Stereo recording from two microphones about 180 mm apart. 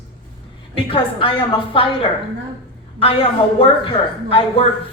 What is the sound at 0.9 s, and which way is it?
A woman's voice, 30° left (ahead or behind).